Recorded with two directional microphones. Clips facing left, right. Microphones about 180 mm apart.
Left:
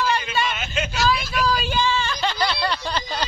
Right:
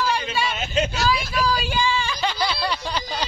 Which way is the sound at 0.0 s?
10° right (ahead or behind).